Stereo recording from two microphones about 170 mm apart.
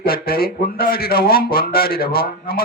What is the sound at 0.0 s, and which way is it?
Speech, 60° left (ahead or behind).